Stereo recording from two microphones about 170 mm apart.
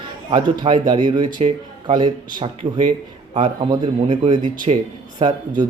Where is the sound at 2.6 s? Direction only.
45° right (ahead or behind).